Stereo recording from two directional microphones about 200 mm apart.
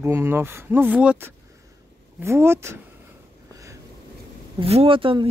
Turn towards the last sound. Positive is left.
turn(degrees=-25)  # may be behind; listen again after turning